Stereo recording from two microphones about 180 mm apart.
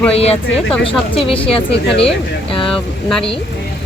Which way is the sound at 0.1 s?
35° left (ahead or behind).